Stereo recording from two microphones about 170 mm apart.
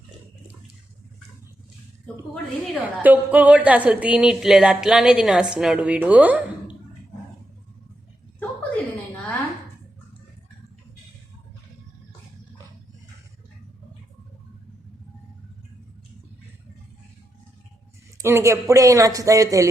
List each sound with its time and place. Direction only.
2.8 s a woman's voice: 10° right (ahead or behind)
18.2 s a man's voice: 15° right (ahead or behind)